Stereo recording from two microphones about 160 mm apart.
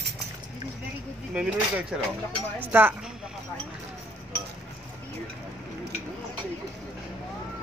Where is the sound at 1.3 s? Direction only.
5° right (ahead or behind).